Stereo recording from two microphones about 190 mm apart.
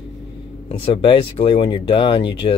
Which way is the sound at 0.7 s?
30° left (ahead or behind).